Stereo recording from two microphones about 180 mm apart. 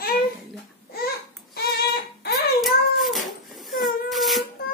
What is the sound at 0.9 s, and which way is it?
Babbling, 60° left (ahead or behind).